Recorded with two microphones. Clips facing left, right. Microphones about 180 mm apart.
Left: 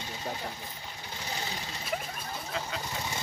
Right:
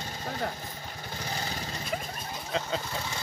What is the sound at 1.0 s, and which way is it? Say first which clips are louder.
Lawn mower: right 2 dB; 45° right (ahead or behind).